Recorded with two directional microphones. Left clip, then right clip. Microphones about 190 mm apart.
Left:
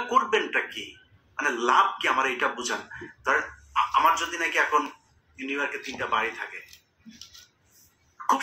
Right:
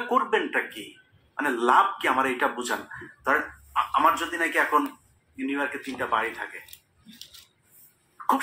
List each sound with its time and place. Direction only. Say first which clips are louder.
0.1 s speech: left 1 dB; 15° left (ahead or behind)